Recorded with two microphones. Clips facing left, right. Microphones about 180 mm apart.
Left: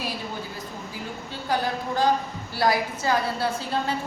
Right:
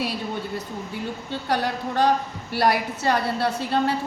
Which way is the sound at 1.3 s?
70° right (ahead or behind).